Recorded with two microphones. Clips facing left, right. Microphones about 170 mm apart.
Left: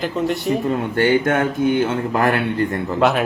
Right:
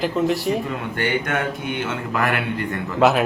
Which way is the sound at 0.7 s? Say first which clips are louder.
Left 7 dB; 35° left (ahead or behind).